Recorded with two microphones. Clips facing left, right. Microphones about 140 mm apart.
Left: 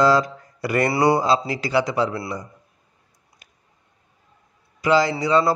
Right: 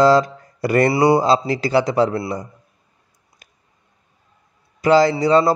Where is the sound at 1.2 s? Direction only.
30° right (ahead or behind).